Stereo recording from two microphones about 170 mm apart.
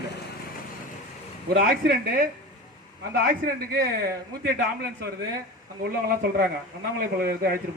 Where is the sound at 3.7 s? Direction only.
70° right (ahead or behind); by 5.1 s 90° right.